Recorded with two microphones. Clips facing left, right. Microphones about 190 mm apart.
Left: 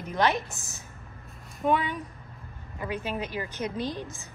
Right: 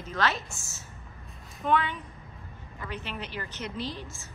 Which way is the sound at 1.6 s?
10° left (ahead or behind).